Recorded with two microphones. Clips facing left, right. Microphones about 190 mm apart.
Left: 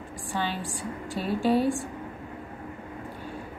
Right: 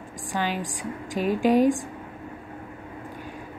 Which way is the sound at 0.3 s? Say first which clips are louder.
Right 3 dB; 15° right (ahead or behind).